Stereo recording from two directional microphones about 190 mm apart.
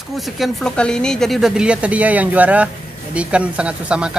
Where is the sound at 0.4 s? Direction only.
5° left (ahead or behind).